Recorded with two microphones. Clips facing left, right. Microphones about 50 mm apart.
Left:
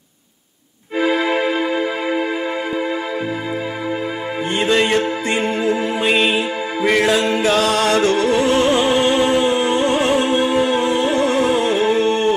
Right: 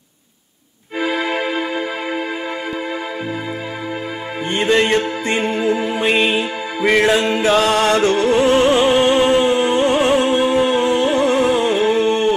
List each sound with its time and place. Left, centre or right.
0.9 s music: left
4.6 s music: right
6.0 s music: centre
10.4 s music: right